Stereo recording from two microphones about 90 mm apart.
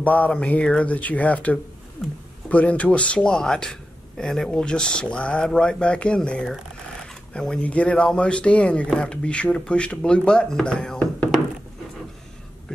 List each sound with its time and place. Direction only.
0.0 s speech: 15° left (ahead or behind)
2.0 s speech: centre (ahead or behind)
2.5 s speech: 15° left (ahead or behind)